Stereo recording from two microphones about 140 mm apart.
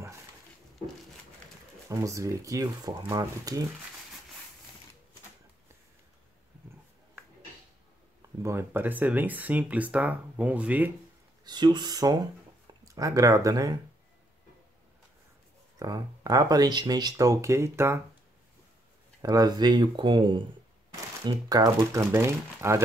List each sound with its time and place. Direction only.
1.9 s speech: 25° right (ahead or behind)
8.4 s speech: 20° right (ahead or behind)
11.4 s speech: 30° right (ahead or behind)
15.8 s speech: 25° right (ahead or behind)
19.2 s speech: 25° right (ahead or behind)